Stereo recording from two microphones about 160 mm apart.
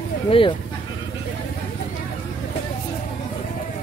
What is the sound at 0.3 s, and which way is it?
Speech, 35° left (ahead or behind).